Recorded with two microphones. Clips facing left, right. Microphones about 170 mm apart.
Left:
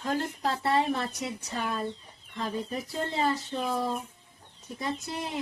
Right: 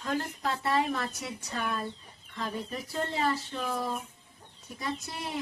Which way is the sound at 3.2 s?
25° left (ahead or behind).